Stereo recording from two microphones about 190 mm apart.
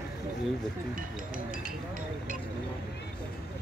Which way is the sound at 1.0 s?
45° right (ahead or behind).